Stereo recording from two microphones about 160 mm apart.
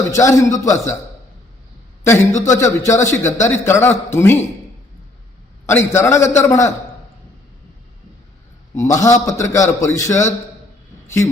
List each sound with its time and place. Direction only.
0.1 s a man's voice: 20° left (ahead or behind)
2.4 s a man's voice: 20° left (ahead or behind)
5.6 s a man's voice: 15° left (ahead or behind)
8.7 s a man's voice: 20° left (ahead or behind)
11.0 s a sound: 15° left (ahead or behind)